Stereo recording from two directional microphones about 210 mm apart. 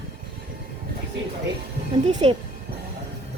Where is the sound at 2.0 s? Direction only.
35° right (ahead or behind).